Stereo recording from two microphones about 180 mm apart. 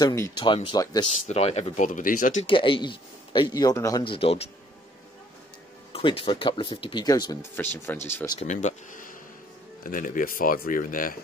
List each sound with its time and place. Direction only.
0.0 s speech: 20° left (ahead or behind)
1.2 s speech: 35° left (ahead or behind)
2.4 s speech: 30° left (ahead or behind)
5.9 s speech: 30° left (ahead or behind)
7.7 s speech: 10° left (ahead or behind)
8.4 s speech: 40° left (ahead or behind)